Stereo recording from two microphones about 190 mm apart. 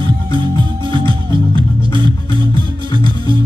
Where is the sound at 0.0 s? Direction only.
25° right (ahead or behind).